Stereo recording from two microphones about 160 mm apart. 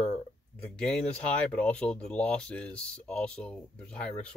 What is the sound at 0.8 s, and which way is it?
Speech, 5° left (ahead or behind).